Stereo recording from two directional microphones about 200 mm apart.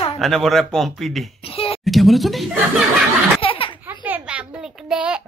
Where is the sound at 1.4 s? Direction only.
30° left (ahead or behind).